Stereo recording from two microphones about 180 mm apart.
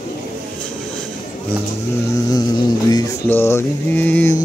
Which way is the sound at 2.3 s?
20° left (ahead or behind).